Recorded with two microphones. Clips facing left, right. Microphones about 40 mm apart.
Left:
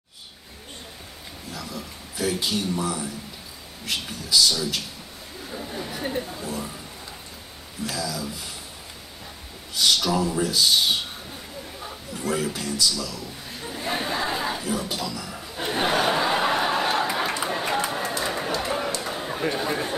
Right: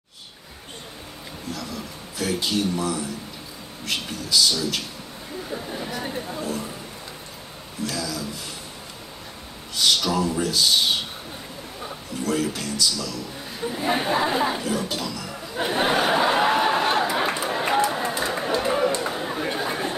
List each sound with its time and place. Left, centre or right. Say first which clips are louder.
1.5 s speech: right 2 dB; centre
6.0 s speech: even; centre
7.8 s speech: right 1 dB; centre
9.8 s speech: even; centre
12.3 s speech: right 1 dB; centre
13.7 s speech: right 5 dB; centre
14.6 s speech: right 2 dB; centre
15.5 s a sound: right 2 dB; centre
17.6 s run: right 7 dB; centre
18.2 s chatter: right 2 dB; centre
18.5 s a sound: right 4 dB; centre
18.9 s chatter: right 2 dB; centre